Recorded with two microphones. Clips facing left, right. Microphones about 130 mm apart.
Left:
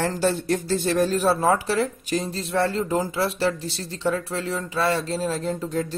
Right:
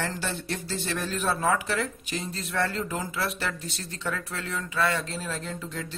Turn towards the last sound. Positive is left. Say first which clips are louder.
# left 9 dB
turn(degrees=40)  # may be behind; listen again after turning